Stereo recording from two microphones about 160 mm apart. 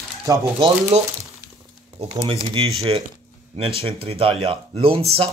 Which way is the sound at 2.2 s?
40° right (ahead or behind).